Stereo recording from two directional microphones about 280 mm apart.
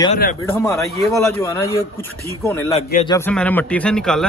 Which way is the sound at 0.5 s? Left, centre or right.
Centre.